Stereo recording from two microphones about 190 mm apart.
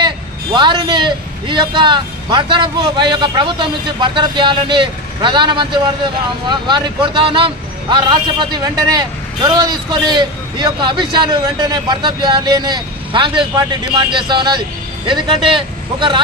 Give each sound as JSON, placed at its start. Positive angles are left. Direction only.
{"t": 0.0, "sound": "a man's voice", "side_deg": -25}